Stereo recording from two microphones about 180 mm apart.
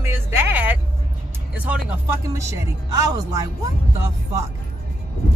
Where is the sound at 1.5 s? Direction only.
10° right (ahead or behind).